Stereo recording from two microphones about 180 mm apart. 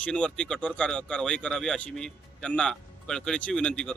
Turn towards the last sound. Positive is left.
turn(degrees=5)  # may be behind; listen again after turning